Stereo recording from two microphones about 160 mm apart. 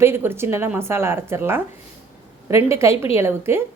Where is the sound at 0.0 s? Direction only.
15° right (ahead or behind).